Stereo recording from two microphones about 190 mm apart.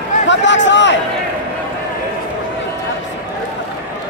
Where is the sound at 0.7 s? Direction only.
70° left (ahead or behind).